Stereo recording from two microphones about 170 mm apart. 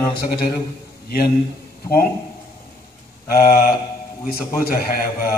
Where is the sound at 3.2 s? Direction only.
60° left (ahead or behind).